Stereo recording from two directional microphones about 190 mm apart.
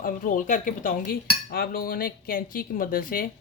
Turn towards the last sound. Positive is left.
turn(degrees=50)  # may be behind; listen again after turning